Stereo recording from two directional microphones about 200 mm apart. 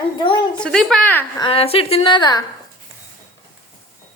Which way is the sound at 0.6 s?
5° left (ahead or behind).